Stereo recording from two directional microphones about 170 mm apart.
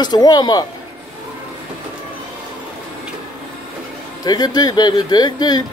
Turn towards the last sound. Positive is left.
turn(degrees=25)  # may be behind; listen again after turning